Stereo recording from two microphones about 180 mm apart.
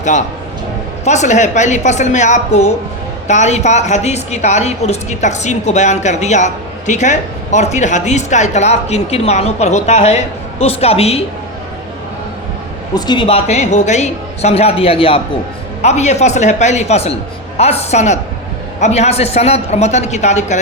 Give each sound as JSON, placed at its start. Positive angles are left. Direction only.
{"t": 1.0, "sound": "a woman's voice", "side_deg": 40}
{"t": 12.9, "sound": "a woman's voice", "side_deg": 25}